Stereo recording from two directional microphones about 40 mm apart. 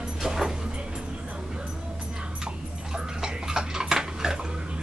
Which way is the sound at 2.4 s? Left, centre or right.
Centre.